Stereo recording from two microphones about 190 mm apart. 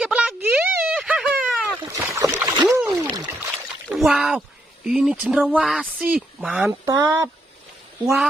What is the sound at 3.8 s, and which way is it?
Speech, 5° right (ahead or behind).